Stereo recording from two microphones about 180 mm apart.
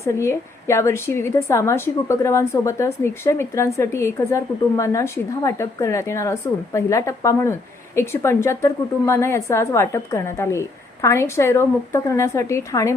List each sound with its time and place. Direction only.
0.0 s a woman's voice: 15° left (ahead or behind)